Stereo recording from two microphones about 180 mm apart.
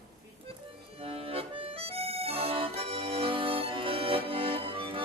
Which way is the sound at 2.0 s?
35° right (ahead or behind).